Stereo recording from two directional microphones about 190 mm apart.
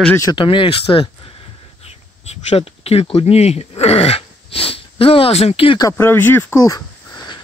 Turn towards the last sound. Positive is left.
turn(degrees=20)  # may be behind; listen again after turning